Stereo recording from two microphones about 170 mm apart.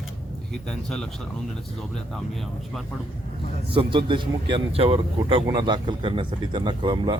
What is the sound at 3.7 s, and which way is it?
A man's voice, 30° right (ahead or behind).